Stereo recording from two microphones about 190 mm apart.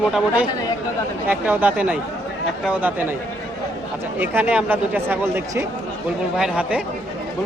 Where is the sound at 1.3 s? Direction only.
10° right (ahead or behind).